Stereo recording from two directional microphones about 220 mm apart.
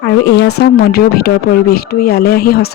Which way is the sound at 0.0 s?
50° left (ahead or behind).